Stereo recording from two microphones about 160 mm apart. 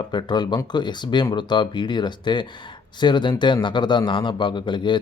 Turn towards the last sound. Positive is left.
turn(degrees=30)  # may be behind; listen again after turning